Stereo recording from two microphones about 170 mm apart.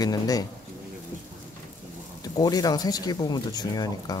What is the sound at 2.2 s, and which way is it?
Speech, 20° left (ahead or behind).